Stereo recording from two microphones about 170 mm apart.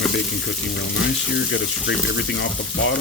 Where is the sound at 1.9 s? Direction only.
90° left.